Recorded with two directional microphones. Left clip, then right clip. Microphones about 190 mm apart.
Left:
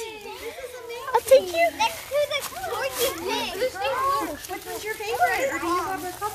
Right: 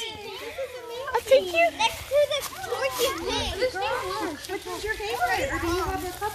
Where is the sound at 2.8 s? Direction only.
20° right (ahead or behind).